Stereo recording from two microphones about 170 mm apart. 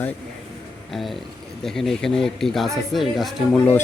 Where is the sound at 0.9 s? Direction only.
Centre (ahead or behind).